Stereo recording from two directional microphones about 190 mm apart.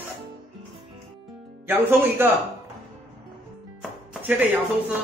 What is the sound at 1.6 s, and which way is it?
Speech, 10° right (ahead or behind).